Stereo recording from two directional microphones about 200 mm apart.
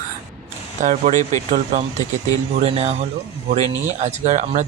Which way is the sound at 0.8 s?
40° right (ahead or behind).